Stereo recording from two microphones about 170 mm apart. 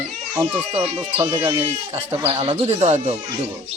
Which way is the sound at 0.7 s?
30° right (ahead or behind).